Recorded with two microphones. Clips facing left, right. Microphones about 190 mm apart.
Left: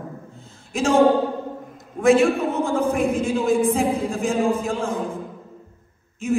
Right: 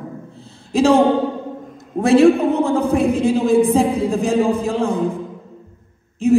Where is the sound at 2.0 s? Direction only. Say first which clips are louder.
Right 3 dB; 35° right (ahead or behind).